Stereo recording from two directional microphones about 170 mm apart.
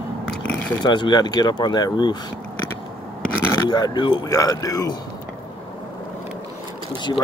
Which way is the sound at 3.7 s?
25° left (ahead or behind).